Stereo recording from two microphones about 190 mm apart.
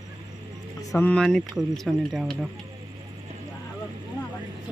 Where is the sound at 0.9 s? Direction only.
5° left (ahead or behind).